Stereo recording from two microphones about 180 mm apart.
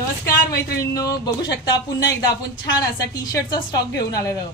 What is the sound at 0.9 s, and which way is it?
Speech, 20° left (ahead or behind).